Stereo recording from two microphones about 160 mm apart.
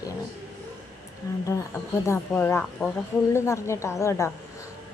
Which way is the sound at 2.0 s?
15° left (ahead or behind).